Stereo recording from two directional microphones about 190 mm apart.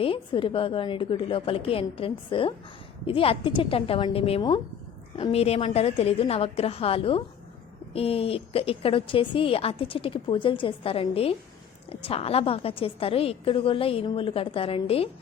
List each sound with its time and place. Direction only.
0.0 s a woman's voice: 30° left (ahead or behind)